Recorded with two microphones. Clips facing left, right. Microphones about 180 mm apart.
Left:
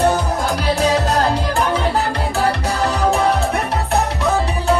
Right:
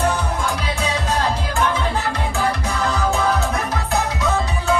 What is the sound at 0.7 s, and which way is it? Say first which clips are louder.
Music: left 6 dB; 35° left (ahead or behind).